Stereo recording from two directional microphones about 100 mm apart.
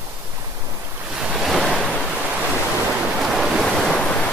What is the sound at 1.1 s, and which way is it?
Waves, 5° right (ahead or behind).